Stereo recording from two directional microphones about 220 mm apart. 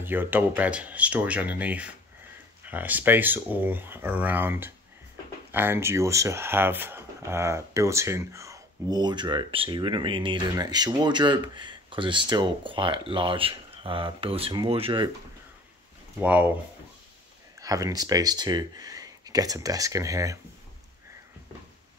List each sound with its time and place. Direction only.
0.0 s speech: 10° right (ahead or behind); by 15.0 s 25° right (ahead or behind)
16.2 s speech: 5° right (ahead or behind)
17.6 s speech: 15° right (ahead or behind)